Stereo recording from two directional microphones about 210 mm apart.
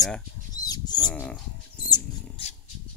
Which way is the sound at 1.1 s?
5° left (ahead or behind).